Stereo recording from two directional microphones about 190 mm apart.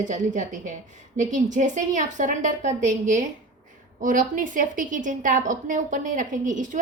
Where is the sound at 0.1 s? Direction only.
40° right (ahead or behind).